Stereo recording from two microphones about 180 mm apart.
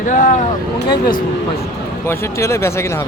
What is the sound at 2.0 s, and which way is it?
Speech, 15° left (ahead or behind).